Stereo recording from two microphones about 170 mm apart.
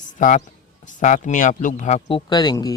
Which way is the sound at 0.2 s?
50° left (ahead or behind).